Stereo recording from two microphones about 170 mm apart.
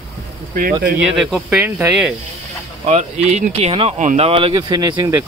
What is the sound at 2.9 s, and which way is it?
Speech, 40° right (ahead or behind).